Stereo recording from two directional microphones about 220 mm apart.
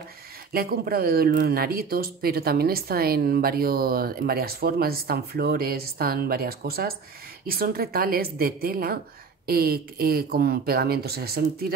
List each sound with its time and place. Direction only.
0.5 s speech: 40° right (ahead or behind)